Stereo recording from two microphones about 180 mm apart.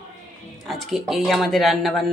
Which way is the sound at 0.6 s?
Centre (ahead or behind).